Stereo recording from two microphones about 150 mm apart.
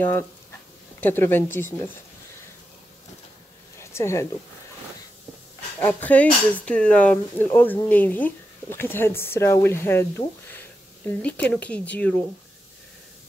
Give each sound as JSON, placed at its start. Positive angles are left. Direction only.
{"t": 1.0, "sound": "speech", "side_deg": 15}
{"t": 3.8, "sound": "speech", "side_deg": 20}
{"t": 5.9, "sound": "speech", "side_deg": 10}